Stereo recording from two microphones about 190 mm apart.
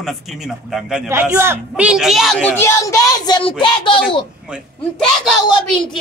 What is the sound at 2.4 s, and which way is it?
Speech, 10° left (ahead or behind).